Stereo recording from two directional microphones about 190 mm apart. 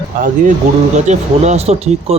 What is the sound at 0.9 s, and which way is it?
Speech, 35° right (ahead or behind).